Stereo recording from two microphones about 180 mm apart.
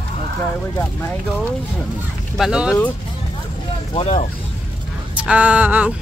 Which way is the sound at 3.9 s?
35° left (ahead or behind).